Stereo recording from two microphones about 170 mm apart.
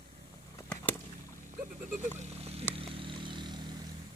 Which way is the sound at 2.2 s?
40° right (ahead or behind).